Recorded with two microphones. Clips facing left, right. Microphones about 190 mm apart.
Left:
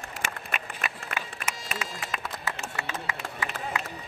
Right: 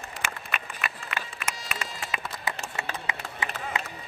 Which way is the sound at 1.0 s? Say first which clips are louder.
Even; 45° left (ahead or behind).